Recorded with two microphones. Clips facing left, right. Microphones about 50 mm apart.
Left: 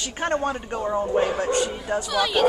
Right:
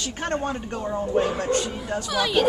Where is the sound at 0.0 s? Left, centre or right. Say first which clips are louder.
Left 2 dB; centre.